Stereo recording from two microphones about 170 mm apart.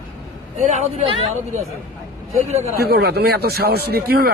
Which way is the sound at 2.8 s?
65° right (ahead or behind).